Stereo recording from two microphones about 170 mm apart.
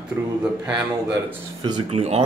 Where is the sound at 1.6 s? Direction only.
25° right (ahead or behind).